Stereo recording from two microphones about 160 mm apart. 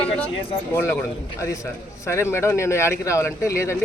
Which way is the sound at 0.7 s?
15° left (ahead or behind).